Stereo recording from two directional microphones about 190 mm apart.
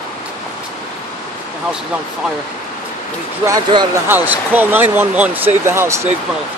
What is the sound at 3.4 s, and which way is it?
Speech, 15° right (ahead or behind).